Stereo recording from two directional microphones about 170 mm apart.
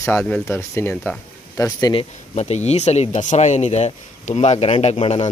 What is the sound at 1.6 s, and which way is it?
Speech, 20° left (ahead or behind).